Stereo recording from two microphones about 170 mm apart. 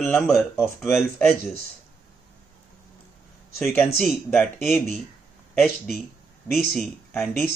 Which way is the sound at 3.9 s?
Centre (ahead or behind).